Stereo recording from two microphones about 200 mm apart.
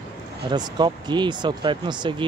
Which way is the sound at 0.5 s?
20° right (ahead or behind).